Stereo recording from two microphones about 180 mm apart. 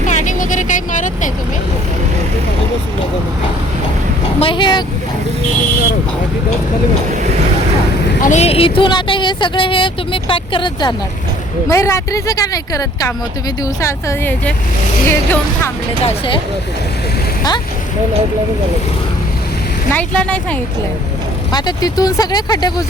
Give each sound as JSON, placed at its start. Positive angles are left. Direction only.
{"t": 0.1, "sound": "vehicle", "side_deg": 40}
{"t": 4.4, "sound": "vehicle", "side_deg": 30}
{"t": 8.2, "sound": "speech", "side_deg": 40}
{"t": 11.7, "sound": "speech", "side_deg": 15}
{"t": 16.0, "sound": "speech", "side_deg": 30}
{"t": 19.9, "sound": "speech", "side_deg": 10}
{"t": 21.5, "sound": "speech", "side_deg": 20}